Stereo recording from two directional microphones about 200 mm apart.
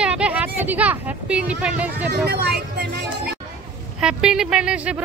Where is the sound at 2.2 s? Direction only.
55° right (ahead or behind).